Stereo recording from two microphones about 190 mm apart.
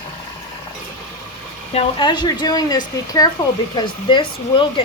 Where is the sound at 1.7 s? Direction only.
25° left (ahead or behind).